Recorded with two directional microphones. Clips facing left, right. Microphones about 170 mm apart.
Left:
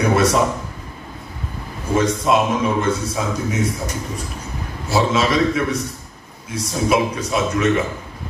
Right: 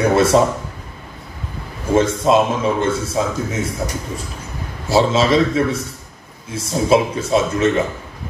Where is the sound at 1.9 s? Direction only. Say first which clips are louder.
Right 3 dB; 30° right (ahead or behind).